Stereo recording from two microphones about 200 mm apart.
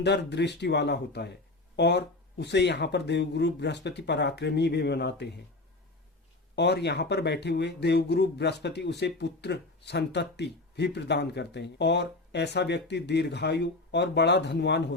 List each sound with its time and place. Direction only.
0.0 s speech: 60° left (ahead or behind)
6.6 s speech: 55° left (ahead or behind)